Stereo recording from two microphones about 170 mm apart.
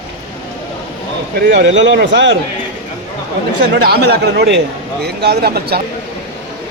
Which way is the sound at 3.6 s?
80° right.